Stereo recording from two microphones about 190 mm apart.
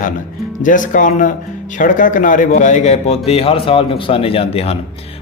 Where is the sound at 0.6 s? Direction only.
45° left (ahead or behind).